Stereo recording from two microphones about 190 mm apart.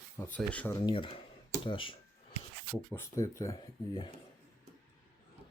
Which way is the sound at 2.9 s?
15° left (ahead or behind).